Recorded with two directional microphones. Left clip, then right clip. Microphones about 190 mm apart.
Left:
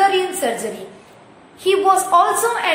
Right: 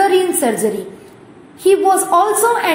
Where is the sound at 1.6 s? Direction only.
15° right (ahead or behind).